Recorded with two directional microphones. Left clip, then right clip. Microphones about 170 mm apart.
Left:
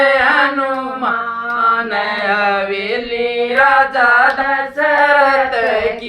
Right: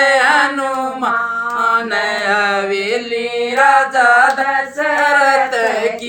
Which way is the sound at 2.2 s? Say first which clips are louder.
Left 1 dB; 25° right (ahead or behind).